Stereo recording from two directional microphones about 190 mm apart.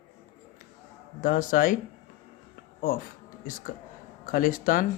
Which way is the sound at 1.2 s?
45° left (ahead or behind).